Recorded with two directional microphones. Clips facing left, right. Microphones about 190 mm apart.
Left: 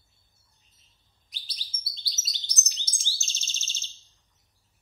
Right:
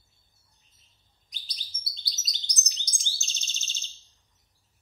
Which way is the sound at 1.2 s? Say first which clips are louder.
Even; 5° left (ahead or behind).